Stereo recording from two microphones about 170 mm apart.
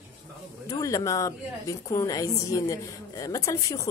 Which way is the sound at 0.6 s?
20° left (ahead or behind).